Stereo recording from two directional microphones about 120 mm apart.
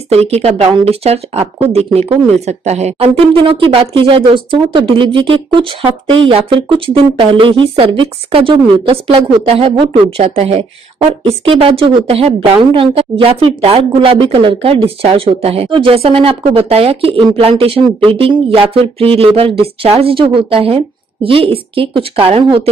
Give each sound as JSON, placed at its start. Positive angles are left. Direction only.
{"t": 0.1, "sound": "speech", "side_deg": -60}
{"t": 11.1, "sound": "speech", "side_deg": -45}